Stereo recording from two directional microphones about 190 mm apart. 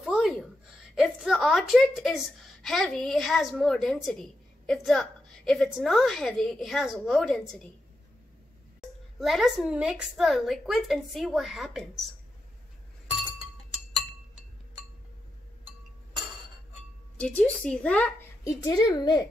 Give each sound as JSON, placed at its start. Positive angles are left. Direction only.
{"t": 0.0, "sound": "a sound", "side_deg": 0}
{"t": 0.9, "sound": "a woman's voice", "side_deg": 0}
{"t": 9.2, "sound": "a woman's voice", "side_deg": 0}
{"t": 17.2, "sound": "a woman's voice", "side_deg": 5}
{"t": 18.6, "sound": "speech", "side_deg": 20}